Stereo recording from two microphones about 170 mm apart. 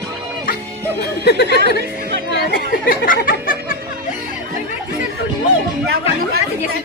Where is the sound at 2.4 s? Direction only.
60° left (ahead or behind).